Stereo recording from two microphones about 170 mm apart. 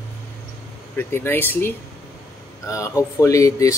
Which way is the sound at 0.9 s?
15° left (ahead or behind).